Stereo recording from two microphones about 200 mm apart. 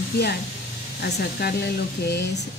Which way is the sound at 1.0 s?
55° left (ahead or behind).